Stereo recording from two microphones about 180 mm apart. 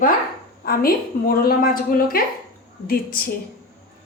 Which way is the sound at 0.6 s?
55° left (ahead or behind).